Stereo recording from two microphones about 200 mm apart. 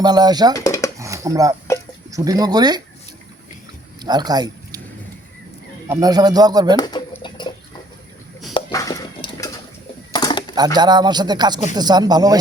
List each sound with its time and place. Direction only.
0.0 s speech: 20° right (ahead or behind)
0.5 s a sound: 15° left (ahead or behind)
0.9 s dishes: 15° right (ahead or behind)
2.0 s speech: 15° right (ahead or behind)
4.0 s speech: 20° right (ahead or behind)
5.9 s speech: 20° right (ahead or behind)
6.7 s a sound: 20° left (ahead or behind)
8.5 s a sound: 20° left (ahead or behind)
10.8 s speech: 20° right (ahead or behind)